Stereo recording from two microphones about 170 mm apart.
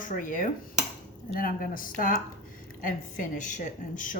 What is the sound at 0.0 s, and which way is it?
A woman's voice, 50° left (ahead or behind).